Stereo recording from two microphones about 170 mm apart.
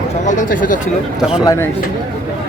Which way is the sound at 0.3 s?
50° left (ahead or behind).